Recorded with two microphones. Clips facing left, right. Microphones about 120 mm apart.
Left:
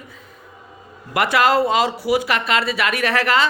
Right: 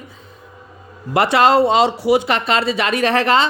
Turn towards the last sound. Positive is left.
turn(degrees=-25)  # may be behind; listen again after turning